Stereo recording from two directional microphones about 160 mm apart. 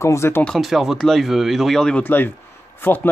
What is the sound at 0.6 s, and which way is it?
Speech, centre (ahead or behind).